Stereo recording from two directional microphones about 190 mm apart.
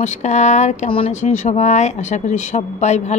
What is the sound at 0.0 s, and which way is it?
A woman's voice, 40° left (ahead or behind).